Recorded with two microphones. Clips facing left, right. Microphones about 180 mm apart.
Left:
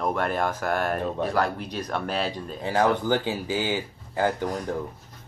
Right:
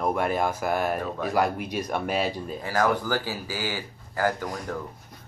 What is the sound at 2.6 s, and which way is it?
Speech, 25° left (ahead or behind).